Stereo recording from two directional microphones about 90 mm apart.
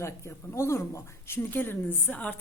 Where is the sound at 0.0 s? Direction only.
30° left (ahead or behind).